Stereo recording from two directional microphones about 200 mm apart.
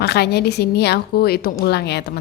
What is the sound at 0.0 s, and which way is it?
A woman's voice, 55° left (ahead or behind).